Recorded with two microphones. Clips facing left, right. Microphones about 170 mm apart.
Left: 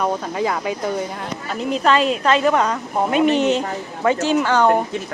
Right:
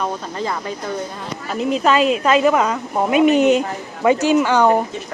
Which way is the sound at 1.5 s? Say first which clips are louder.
Right 1 dB; 5° right (ahead or behind).